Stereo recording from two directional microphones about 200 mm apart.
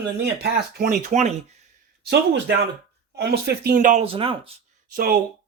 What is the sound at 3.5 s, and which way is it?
Speech, 50° right (ahead or behind).